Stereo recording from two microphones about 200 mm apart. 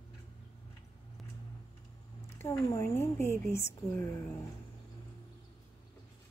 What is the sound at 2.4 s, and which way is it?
Speech, 15° left (ahead or behind).